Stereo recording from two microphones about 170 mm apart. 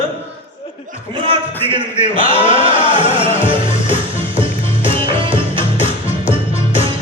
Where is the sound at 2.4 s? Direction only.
30° right (ahead or behind).